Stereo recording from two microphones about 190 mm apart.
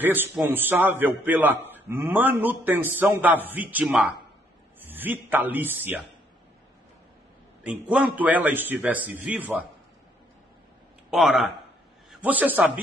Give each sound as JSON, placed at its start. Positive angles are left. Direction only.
{"t": 0.0, "sound": "a man's voice", "side_deg": -10}
{"t": 7.6, "sound": "a man's voice", "side_deg": -5}
{"t": 11.1, "sound": "a man's voice", "side_deg": 0}